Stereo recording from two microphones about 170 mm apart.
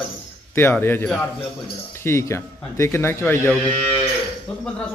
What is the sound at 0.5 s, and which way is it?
Speech, 15° left (ahead or behind).